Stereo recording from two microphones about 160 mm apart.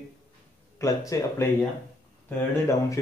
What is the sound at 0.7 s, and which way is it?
Speech, 20° left (ahead or behind).